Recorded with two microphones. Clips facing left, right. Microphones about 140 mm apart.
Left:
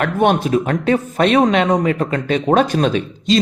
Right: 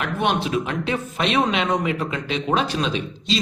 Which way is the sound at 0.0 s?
45° left (ahead or behind).